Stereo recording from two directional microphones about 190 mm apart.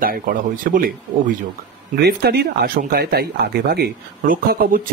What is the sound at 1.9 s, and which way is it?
Speech, 55° right (ahead or behind).